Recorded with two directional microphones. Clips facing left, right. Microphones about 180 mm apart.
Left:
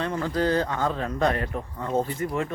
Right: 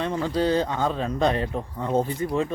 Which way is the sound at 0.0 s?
20° right (ahead or behind).